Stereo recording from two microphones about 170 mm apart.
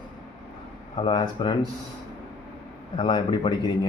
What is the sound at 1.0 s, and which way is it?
Speech, 25° left (ahead or behind).